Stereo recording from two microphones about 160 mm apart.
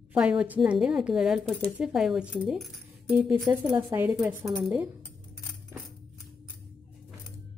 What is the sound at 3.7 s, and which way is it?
Speech, 15° right (ahead or behind).